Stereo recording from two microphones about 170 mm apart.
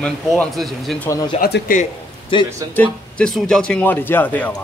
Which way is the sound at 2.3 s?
30° left (ahead or behind).